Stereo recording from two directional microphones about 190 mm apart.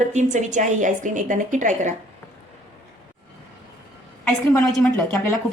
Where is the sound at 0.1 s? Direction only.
40° right (ahead or behind).